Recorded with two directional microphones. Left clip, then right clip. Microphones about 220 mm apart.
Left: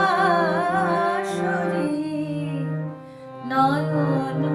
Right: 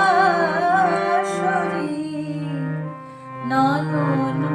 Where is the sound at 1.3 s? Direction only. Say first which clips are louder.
Right 3 dB; 25° right (ahead or behind).